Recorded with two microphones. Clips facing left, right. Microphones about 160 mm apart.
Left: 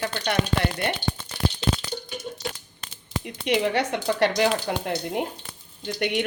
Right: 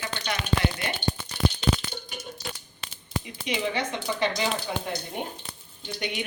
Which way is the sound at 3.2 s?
65° left (ahead or behind).